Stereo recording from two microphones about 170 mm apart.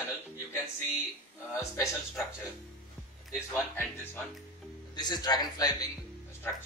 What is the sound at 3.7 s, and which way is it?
Speech, 10° left (ahead or behind).